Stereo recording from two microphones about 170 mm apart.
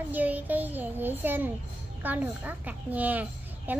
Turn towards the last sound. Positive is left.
turn(degrees=-10)  # may be behind; listen again after turning